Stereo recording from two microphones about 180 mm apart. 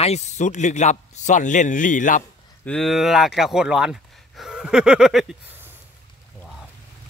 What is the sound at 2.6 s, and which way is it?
Speech, 5° left (ahead or behind).